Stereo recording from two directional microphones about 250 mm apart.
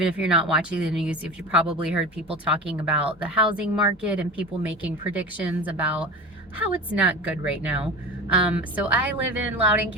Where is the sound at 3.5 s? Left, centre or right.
Centre.